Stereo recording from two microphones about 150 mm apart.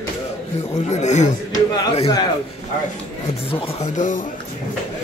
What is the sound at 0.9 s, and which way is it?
Speech, 50° left (ahead or behind).